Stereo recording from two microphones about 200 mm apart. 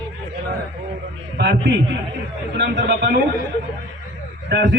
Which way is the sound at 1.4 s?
60° right (ahead or behind).